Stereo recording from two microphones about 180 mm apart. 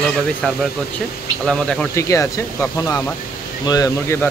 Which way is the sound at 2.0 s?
15° left (ahead or behind).